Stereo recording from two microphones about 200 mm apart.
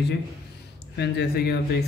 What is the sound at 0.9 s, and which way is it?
Speech, 55° left (ahead or behind).